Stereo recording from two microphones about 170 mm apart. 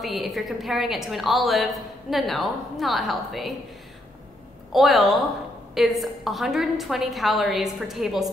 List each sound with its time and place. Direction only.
0.0 s a woman's voice: centre (ahead or behind)
4.7 s a woman's voice: centre (ahead or behind)